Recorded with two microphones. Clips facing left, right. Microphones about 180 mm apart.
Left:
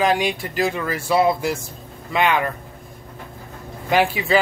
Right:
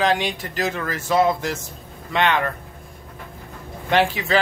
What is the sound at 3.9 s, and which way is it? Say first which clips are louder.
Speech: left 1 dB; 10° left (ahead or behind).